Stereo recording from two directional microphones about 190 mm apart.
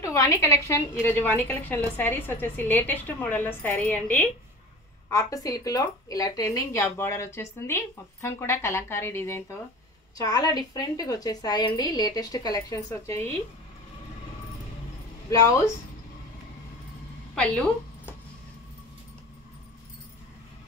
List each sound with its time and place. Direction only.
0.0 s a woman's voice: 15° left (ahead or behind)
15.2 s speech: 15° left (ahead or behind)
17.4 s a woman's voice: 5° left (ahead or behind)